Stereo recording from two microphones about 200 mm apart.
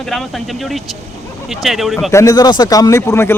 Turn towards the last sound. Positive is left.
turn(degrees=15)  # may be behind; listen again after turning